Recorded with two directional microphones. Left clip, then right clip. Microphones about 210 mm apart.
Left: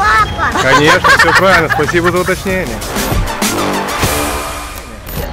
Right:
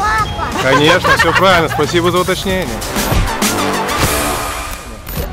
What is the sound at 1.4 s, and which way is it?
Speech, 15° right (ahead or behind).